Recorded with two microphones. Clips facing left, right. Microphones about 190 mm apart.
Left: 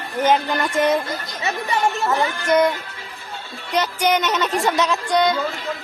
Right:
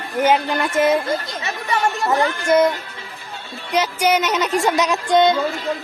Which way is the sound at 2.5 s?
Centre (ahead or behind).